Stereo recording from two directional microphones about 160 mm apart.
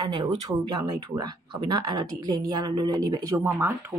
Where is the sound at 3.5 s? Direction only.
10° right (ahead or behind).